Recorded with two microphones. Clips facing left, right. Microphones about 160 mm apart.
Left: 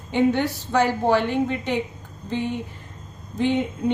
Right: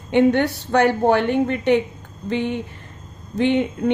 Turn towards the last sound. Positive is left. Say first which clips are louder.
# right 3 dB
turn(degrees=-65)  # may be behind; listen again after turning